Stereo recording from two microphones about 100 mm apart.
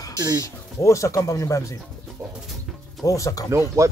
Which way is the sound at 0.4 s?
30° left (ahead or behind).